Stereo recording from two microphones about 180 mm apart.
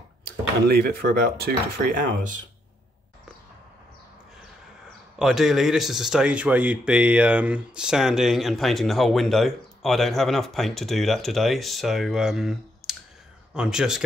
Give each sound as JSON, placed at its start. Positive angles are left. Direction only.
{"t": 0.2, "sound": "speech", "side_deg": -60}
{"t": 5.2, "sound": "speech", "side_deg": 0}